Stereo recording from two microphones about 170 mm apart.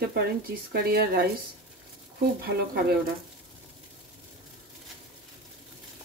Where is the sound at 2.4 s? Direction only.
65° right (ahead or behind).